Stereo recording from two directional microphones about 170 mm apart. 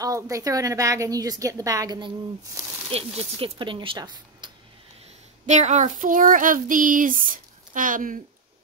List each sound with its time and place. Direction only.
0.0 s a woman's voice: 20° right (ahead or behind)
5.5 s speech: 45° right (ahead or behind)